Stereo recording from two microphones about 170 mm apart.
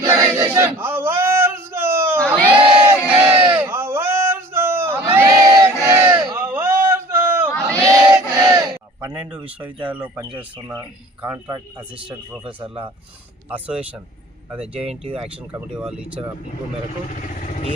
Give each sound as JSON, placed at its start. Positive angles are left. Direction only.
{"t": 0.0, "sound": "a sound", "side_deg": -15}
{"t": 2.1, "sound": "crowd", "side_deg": 5}
{"t": 2.6, "sound": "crowd", "side_deg": -30}
{"t": 3.1, "sound": "crowd", "side_deg": -5}
{"t": 3.3, "sound": "a sound", "side_deg": -30}
{"t": 3.6, "sound": "crowd", "side_deg": -15}
{"t": 6.3, "sound": "a sound", "side_deg": -10}
{"t": 9.1, "sound": "speech", "side_deg": -5}
{"t": 14.8, "sound": "speech", "side_deg": -35}
{"t": 15.8, "sound": "speech", "side_deg": -5}
{"t": 17.1, "sound": "vehicle", "side_deg": 50}